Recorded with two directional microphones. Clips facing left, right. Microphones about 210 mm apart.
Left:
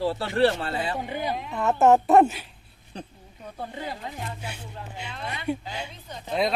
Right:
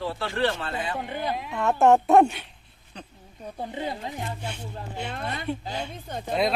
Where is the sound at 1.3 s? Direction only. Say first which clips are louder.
Even; centre (ahead or behind).